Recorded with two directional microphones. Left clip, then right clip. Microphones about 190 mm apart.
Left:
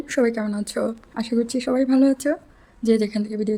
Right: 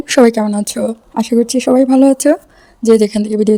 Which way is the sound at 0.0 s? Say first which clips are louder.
Right 12 dB; 45° right (ahead or behind).